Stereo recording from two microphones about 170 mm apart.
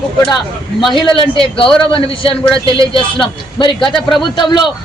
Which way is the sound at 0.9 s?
30° left (ahead or behind).